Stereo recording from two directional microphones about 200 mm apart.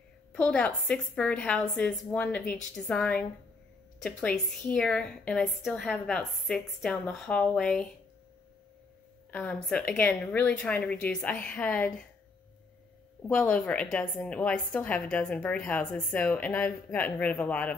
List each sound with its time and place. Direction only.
0.3 s a woman's voice: 5° left (ahead or behind)
9.3 s a woman's voice: 5° left (ahead or behind)
13.3 s a woman's voice: 5° left (ahead or behind)